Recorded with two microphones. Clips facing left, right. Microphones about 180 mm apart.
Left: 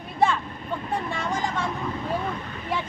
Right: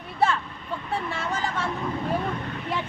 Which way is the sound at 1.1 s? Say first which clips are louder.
Left 1 dB; 15° left (ahead or behind).